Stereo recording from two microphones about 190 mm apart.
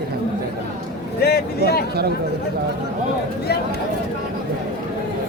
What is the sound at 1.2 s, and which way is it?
Speech, 55° left (ahead or behind).